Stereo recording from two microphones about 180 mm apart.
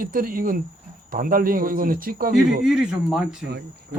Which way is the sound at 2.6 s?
5° right (ahead or behind).